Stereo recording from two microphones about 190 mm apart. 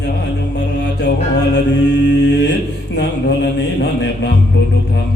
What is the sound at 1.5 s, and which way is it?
A man's voice, 65° left (ahead or behind).